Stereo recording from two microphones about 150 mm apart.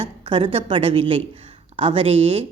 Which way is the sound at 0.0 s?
40° right (ahead or behind).